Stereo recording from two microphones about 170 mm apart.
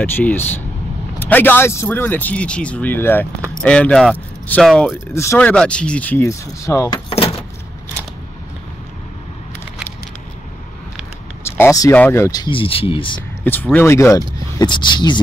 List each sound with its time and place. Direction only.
0.0 s speech: 10° left (ahead or behind)
5.1 s speech: 15° left (ahead or behind)
5.5 s speech: 5° left (ahead or behind)
11.4 s speech: 15° left (ahead or behind); by 13.2 s 30° left (ahead or behind)
13.4 s speech: 10° left (ahead or behind); by 15.1 s 25° left (ahead or behind)